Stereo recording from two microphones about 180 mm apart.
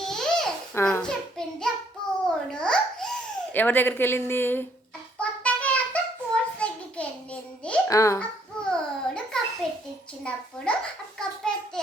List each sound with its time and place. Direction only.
0.0 s babbling: centre (ahead or behind)
0.8 s a child's voice: 10° left (ahead or behind)
2.2 s babbling: 5° left (ahead or behind)
3.5 s speech: 10° left (ahead or behind)
5.2 s a sound: 5° left (ahead or behind)
7.9 s speech: 15° left (ahead or behind)
8.7 s babbling: 5° left (ahead or behind)
9.6 s a sound: 5° left (ahead or behind)
10.7 s speech: 5° left (ahead or behind)
11.2 s a sound: 5° left (ahead or behind)